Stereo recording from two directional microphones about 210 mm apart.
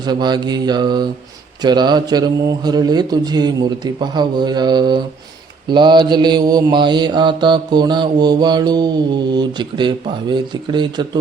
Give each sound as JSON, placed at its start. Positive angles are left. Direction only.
{"t": 0.0, "sound": "speech", "side_deg": -20}